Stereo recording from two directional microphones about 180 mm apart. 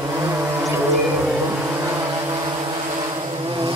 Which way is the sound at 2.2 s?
25° right (ahead or behind).